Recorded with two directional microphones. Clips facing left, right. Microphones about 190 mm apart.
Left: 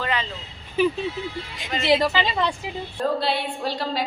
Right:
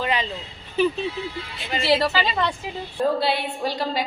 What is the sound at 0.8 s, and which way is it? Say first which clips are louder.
Speech: even; 10° left (ahead or behind).